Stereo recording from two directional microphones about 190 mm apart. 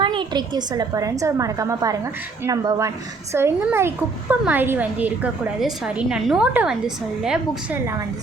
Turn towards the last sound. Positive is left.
turn(degrees=-5)  # may be behind; listen again after turning